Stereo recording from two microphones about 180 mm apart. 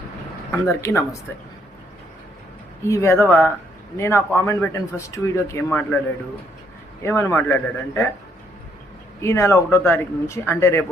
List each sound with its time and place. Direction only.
0.6 s a man's voice: 15° left (ahead or behind)
2.8 s a man's voice: 15° left (ahead or behind)
7.0 s a man's voice: 15° left (ahead or behind)
9.2 s a man's voice: 15° left (ahead or behind)